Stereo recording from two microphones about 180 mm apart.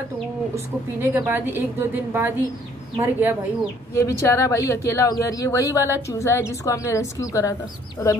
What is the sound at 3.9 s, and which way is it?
A woman's voice, 15° left (ahead or behind).